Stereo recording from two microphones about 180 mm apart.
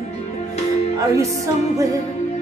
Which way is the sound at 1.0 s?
20° right (ahead or behind).